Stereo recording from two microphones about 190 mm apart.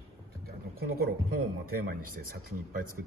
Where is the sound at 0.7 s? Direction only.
55° right (ahead or behind).